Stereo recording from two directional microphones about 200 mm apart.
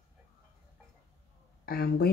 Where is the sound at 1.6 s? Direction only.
50° left (ahead or behind).